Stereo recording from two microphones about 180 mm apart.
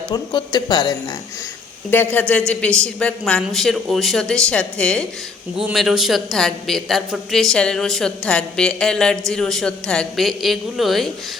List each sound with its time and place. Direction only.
0.1 s speech: 20° left (ahead or behind)
1.9 s a man's voice: 10° left (ahead or behind)